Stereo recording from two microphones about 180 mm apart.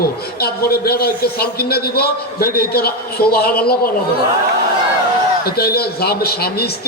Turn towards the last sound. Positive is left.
turn(degrees=60)  # may be behind; listen again after turning